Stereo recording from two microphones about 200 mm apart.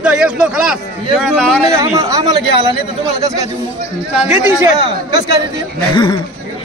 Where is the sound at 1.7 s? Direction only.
15° right (ahead or behind).